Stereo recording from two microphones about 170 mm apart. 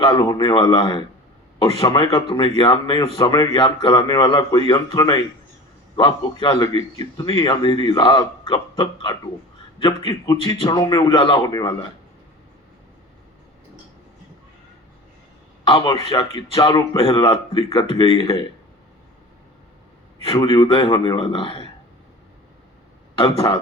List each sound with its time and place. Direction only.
0.1 s a man's voice: 25° left (ahead or behind)
15.6 s a man's voice: 30° left (ahead or behind)
20.2 s a man's voice: 30° left (ahead or behind)